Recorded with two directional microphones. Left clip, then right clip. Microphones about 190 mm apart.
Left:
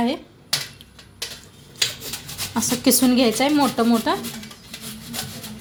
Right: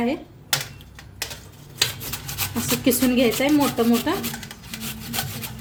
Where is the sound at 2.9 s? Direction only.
25° left (ahead or behind).